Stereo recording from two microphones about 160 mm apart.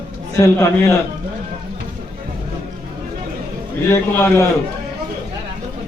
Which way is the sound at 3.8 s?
15° left (ahead or behind).